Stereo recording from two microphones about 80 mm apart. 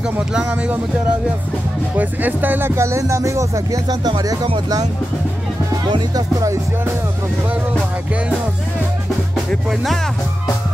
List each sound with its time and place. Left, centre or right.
2.0 s speech: right
3.9 s speech: right
5.9 s speech: right
9.5 s music: centre